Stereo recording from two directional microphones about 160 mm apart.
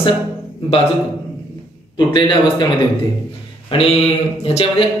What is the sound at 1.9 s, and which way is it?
Speech, 30° left (ahead or behind).